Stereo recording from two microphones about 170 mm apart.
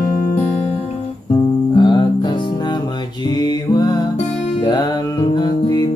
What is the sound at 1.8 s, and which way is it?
Music, 25° left (ahead or behind).